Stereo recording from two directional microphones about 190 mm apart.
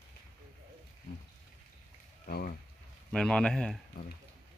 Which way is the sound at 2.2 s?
50° left (ahead or behind).